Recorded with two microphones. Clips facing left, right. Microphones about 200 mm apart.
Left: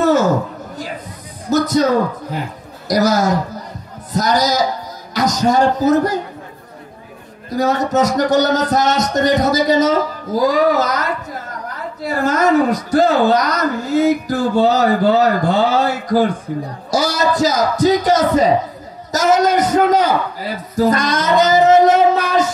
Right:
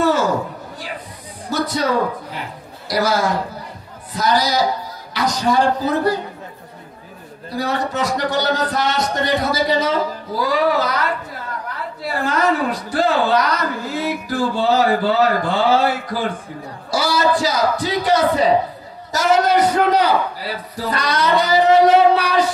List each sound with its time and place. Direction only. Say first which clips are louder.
0.0 s a sound: left 3 dB; 45° left (ahead or behind)
1.5 s a man's voice: left 6 dB; 45° left (ahead or behind)
7.4 s a man's voice: left 5 dB; 45° left (ahead or behind)